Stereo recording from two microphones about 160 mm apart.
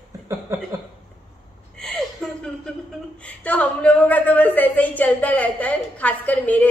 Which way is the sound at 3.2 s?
10° left (ahead or behind).